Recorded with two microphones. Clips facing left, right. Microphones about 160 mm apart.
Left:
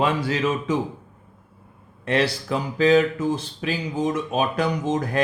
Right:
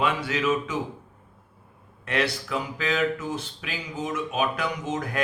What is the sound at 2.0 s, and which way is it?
Speech, 30° left (ahead or behind).